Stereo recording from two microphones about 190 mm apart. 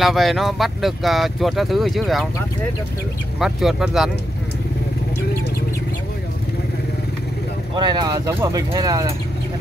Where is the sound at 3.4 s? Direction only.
Centre (ahead or behind).